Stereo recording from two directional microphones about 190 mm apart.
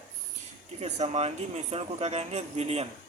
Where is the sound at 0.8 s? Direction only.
35° right (ahead or behind).